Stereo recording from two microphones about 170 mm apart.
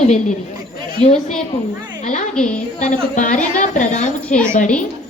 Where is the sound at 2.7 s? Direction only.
45° left (ahead or behind).